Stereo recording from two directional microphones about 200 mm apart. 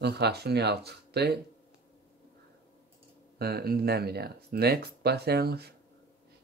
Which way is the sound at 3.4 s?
50° right (ahead or behind).